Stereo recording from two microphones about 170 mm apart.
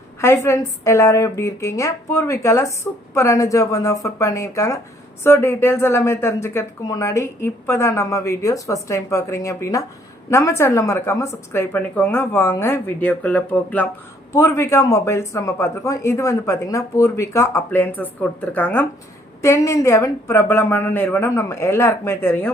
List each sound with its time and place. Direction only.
0.2 s a woman's voice: 15° left (ahead or behind)